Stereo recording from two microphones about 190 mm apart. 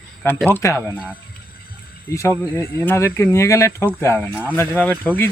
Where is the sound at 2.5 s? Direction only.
10° left (ahead or behind).